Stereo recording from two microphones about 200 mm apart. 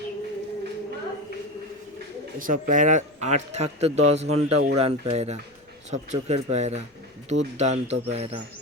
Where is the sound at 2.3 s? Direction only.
40° right (ahead or behind).